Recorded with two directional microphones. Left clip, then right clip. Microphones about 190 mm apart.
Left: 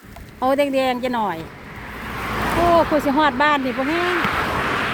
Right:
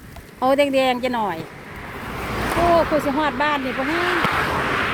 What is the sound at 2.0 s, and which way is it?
Vehicle, 20° left (ahead or behind).